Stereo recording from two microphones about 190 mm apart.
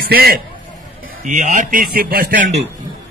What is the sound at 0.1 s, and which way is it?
Speech, 55° right (ahead or behind).